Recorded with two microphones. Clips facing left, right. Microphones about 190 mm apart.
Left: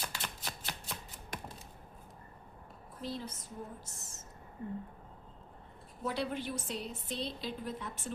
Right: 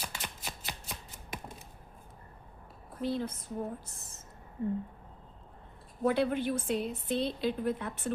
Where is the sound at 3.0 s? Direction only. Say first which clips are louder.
Right 8 dB; 55° right (ahead or behind).